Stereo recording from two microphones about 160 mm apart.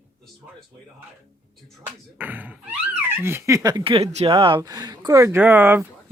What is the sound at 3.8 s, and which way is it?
Speech, 35° right (ahead or behind).